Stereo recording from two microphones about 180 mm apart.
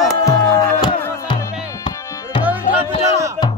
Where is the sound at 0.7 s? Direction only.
25° left (ahead or behind).